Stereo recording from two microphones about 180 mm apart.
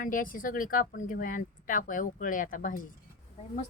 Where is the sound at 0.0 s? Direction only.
50° left (ahead or behind).